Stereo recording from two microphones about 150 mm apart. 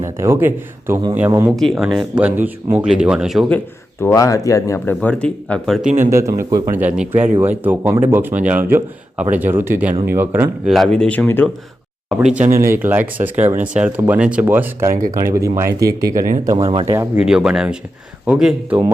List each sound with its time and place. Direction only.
0.0 s speech: 20° right (ahead or behind)
1.5 s speech: centre (ahead or behind)
4.0 s speech: 20° left (ahead or behind)
4.9 s speech: 10° left (ahead or behind)
6.0 s speech: 20° right (ahead or behind)
10.7 s speech: centre (ahead or behind)
12.2 s speech: 10° right (ahead or behind)
16.6 s speech: 35° right (ahead or behind)
17.2 s speech: 5° right (ahead or behind)